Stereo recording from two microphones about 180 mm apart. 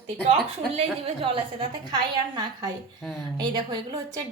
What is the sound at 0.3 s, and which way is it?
A woman's voice, 35° right (ahead or behind).